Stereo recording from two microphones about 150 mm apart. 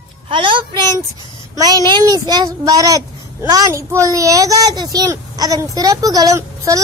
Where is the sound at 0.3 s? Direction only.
35° right (ahead or behind).